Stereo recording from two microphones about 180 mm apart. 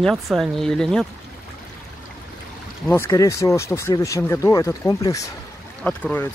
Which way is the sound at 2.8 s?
10° left (ahead or behind).